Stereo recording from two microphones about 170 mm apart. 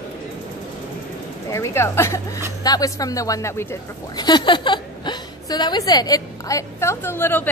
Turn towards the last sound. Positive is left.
turn(degrees=10)  # may be behind; listen again after turning